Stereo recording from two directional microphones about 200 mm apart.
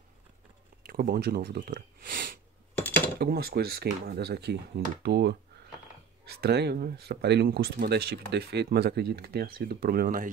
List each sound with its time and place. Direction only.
0.8 s speech: 50° right (ahead or behind)
6.4 s speech: 55° right (ahead or behind)